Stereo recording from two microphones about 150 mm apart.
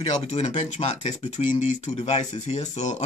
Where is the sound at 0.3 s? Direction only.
45° left (ahead or behind).